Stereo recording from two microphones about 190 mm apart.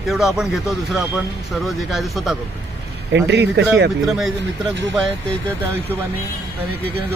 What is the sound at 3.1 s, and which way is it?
Speech, 60° right (ahead or behind).